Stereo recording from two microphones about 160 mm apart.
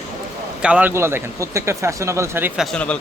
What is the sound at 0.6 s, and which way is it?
Speech, 10° right (ahead or behind).